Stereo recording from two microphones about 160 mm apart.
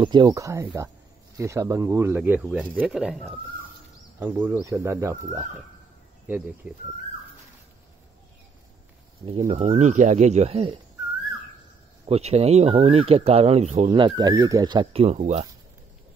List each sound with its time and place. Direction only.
0.0 s speech: 30° right (ahead or behind); by 3.3 s centre (ahead or behind)
4.2 s speech: 10° right (ahead or behind)
9.5 s speech: 50° right (ahead or behind)
12.1 s speech: 40° right (ahead or behind)